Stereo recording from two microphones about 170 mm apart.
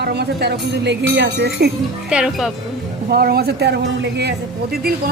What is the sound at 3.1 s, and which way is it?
Speech, 65° right (ahead or behind).